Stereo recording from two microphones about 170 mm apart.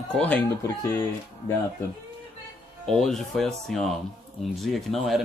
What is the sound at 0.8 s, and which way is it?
Speech, 20° left (ahead or behind).